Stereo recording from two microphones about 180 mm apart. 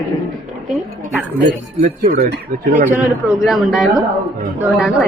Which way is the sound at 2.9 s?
Centre (ahead or behind).